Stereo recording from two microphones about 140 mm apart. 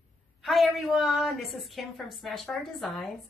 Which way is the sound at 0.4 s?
Centre (ahead or behind).